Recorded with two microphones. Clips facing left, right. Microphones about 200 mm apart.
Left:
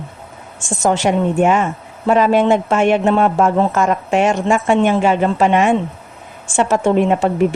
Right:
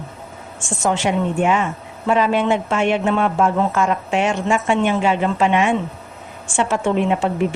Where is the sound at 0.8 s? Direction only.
40° left (ahead or behind).